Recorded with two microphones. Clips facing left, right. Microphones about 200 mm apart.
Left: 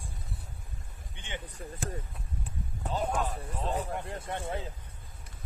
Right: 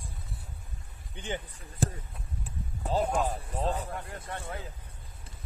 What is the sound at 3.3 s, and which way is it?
Speech, 35° right (ahead or behind).